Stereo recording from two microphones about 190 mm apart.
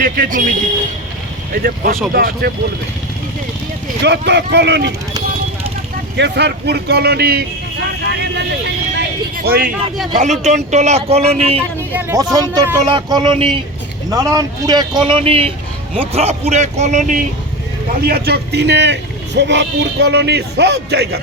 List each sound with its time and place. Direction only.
0.0 s a man's voice: 45° right (ahead or behind)
1.6 s a man's voice: 50° right (ahead or behind)
4.0 s speech: 65° right (ahead or behind)
6.1 s speech: 65° right (ahead or behind)
10.4 s a man's voice: 40° right (ahead or behind)
11.9 s a man's voice: 10° right (ahead or behind); by 17.2 s 40° right (ahead or behind)
18.0 s speech: 55° right (ahead or behind)